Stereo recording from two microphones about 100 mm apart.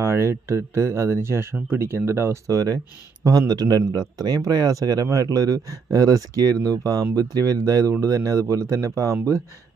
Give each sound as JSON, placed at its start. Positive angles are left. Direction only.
{"t": 0.0, "sound": "speech", "side_deg": -30}